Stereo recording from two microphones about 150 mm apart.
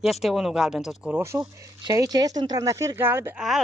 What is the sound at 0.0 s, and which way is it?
Speech, centre (ahead or behind).